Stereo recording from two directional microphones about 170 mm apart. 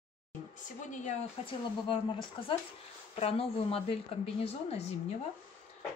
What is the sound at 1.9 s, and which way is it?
A woman's voice, 30° left (ahead or behind).